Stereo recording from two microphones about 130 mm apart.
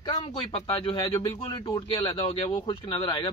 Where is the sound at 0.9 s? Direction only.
25° left (ahead or behind).